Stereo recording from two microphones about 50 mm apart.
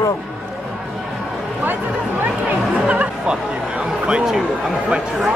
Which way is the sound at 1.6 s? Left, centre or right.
Right.